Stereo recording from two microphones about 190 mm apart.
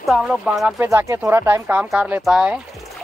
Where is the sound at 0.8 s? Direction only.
15° right (ahead or behind).